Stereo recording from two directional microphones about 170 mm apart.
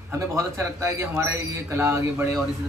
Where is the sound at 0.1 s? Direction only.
15° right (ahead or behind).